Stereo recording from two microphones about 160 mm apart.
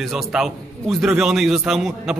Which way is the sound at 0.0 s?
Centre (ahead or behind).